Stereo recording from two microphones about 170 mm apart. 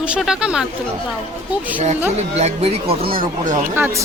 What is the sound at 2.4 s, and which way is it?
Speech, 40° right (ahead or behind).